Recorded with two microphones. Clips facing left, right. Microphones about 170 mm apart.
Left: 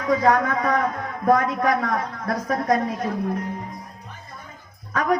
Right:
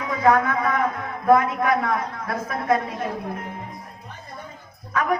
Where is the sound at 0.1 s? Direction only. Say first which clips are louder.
Left 1 dB; 40° left (ahead or behind).